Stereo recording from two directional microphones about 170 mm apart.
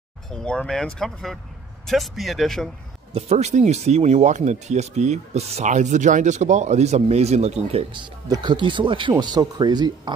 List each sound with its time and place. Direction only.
0.3 s speech: 5° left (ahead or behind)
3.1 s speech: 40° right (ahead or behind)
8.3 s speech: 25° right (ahead or behind)